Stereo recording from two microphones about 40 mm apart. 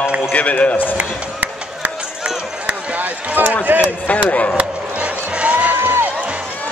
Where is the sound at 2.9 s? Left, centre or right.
Right.